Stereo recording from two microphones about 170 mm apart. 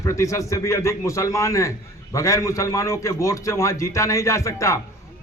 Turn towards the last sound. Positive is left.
turn(degrees=15)  # may be behind; listen again after turning